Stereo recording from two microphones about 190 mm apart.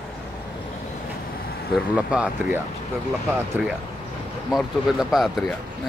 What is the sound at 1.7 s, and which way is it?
Speech, 5° right (ahead or behind).